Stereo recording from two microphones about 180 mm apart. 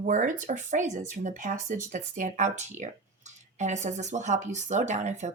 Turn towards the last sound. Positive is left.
turn(degrees=-40)  # may be behind; listen again after turning